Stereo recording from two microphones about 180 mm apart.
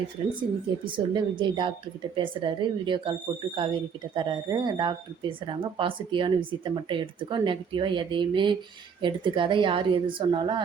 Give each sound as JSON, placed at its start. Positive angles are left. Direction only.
{"t": 0.9, "sound": "speech", "side_deg": -25}